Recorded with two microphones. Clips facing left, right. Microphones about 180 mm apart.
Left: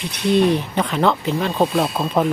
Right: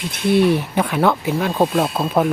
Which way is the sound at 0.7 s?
5° right (ahead or behind).